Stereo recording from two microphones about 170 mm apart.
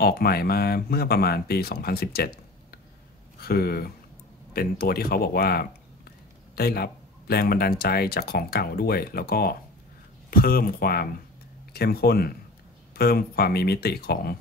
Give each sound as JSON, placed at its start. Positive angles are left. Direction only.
{"t": 0.0, "sound": "speech", "side_deg": 65}
{"t": 3.3, "sound": "speech", "side_deg": 65}